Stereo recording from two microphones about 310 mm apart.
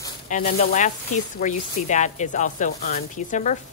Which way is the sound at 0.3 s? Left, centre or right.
Left.